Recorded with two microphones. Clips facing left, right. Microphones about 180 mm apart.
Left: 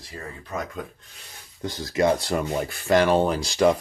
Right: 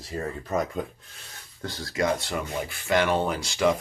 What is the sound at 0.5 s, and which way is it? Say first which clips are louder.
Speech: right 4 dB; 45° right (ahead or behind).